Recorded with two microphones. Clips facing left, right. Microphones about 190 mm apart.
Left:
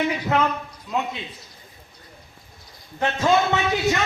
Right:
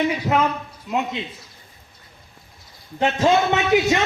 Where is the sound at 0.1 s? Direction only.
10° right (ahead or behind).